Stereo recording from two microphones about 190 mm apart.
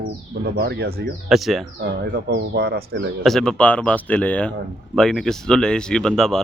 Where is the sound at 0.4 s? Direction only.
55° right (ahead or behind).